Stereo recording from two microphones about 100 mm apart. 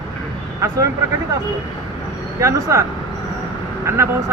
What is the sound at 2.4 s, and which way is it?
Speech, 30° right (ahead or behind).